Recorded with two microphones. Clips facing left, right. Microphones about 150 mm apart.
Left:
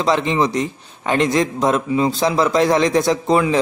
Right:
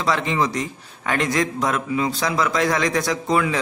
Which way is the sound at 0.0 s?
20° left (ahead or behind).